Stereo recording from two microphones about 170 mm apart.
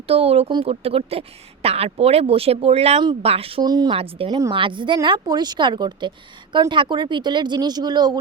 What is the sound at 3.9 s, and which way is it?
Speech, 35° right (ahead or behind).